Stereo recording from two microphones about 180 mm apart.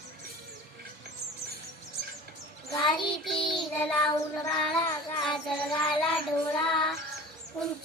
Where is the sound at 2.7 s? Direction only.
25° left (ahead or behind).